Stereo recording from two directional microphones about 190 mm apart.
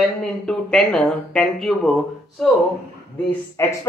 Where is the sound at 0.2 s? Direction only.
5° left (ahead or behind).